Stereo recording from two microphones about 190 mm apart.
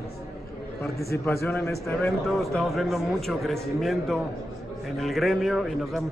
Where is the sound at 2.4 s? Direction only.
Centre (ahead or behind).